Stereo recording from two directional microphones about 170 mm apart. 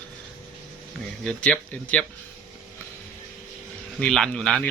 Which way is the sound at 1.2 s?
5° left (ahead or behind).